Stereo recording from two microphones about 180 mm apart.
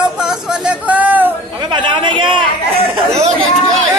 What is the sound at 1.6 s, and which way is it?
Chatter, 25° right (ahead or behind).